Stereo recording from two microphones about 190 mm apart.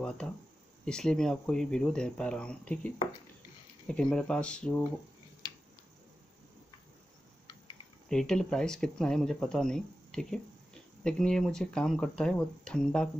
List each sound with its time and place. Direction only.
0.8 s speech: 5° left (ahead or behind)
5.4 s a sound: 20° left (ahead or behind)
8.1 s speech: 5° left (ahead or behind)